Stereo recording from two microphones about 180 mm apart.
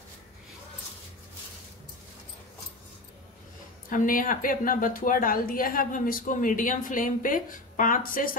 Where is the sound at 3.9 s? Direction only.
50° left (ahead or behind).